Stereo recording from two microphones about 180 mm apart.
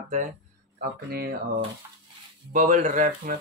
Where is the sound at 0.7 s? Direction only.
60° right (ahead or behind).